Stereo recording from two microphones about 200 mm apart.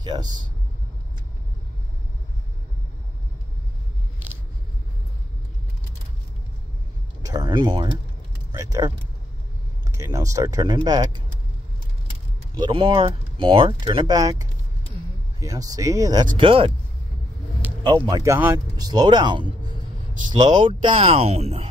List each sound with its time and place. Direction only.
0.0 s speech: 20° right (ahead or behind)
7.2 s speech: 20° right (ahead or behind)
12.5 s speech: 25° right (ahead or behind)
17.8 s speech: 20° right (ahead or behind)